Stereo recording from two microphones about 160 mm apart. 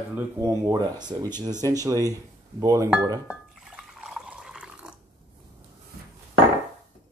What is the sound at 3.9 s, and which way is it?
Water, 5° right (ahead or behind).